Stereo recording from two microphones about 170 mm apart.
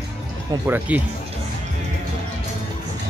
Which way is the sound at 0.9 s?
10° right (ahead or behind).